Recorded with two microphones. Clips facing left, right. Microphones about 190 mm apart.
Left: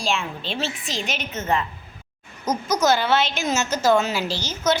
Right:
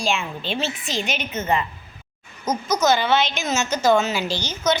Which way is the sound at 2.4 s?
10° left (ahead or behind).